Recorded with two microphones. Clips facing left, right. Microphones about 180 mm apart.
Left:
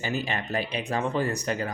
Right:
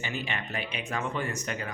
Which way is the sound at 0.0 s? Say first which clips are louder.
Left 5 dB; 40° left (ahead or behind).